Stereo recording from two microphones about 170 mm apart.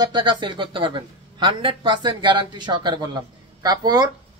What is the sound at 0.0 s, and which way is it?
Speech, 25° right (ahead or behind).